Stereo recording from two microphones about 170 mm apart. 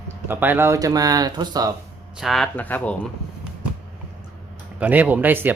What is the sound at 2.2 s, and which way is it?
Speech, centre (ahead or behind).